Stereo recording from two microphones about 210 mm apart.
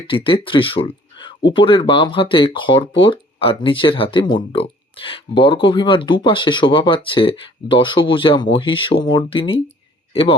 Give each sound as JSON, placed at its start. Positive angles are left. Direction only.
{"t": 0.1, "sound": "speech", "side_deg": 25}